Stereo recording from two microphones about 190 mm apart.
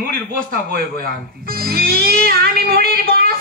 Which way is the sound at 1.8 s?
55° right (ahead or behind).